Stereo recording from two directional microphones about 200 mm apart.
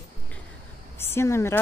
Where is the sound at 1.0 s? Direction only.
10° left (ahead or behind).